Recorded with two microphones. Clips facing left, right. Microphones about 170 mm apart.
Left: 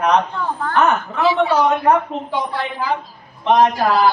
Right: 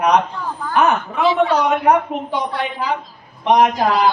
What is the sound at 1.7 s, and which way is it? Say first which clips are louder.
A man's voice: right 1 dB; 15° right (ahead or behind).